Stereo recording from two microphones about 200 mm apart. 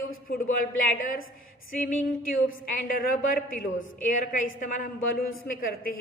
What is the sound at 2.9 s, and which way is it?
A woman's voice, 40° left (ahead or behind).